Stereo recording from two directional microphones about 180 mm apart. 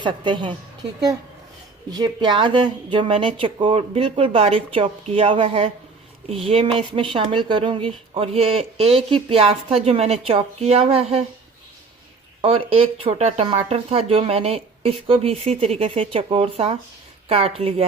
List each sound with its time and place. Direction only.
0.0 s speech: 25° right (ahead or behind)
1.9 s speech: 25° right (ahead or behind)
12.4 s speech: 30° right (ahead or behind)